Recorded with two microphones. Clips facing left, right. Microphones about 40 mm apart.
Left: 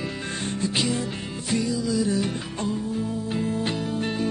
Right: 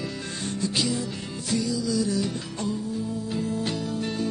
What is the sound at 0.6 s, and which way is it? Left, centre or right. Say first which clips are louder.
Music: left 1 dB; left.